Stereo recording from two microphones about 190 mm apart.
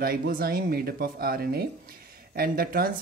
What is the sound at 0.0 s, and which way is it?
Speech, 50° right (ahead or behind).